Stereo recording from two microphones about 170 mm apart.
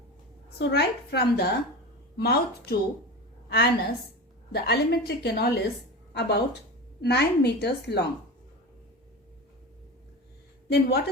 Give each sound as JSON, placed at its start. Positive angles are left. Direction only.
{"t": 0.6, "sound": "a woman's voice", "side_deg": 70}
{"t": 6.1, "sound": "a woman's voice", "side_deg": 80}
{"t": 10.7, "sound": "a woman's voice", "side_deg": 70}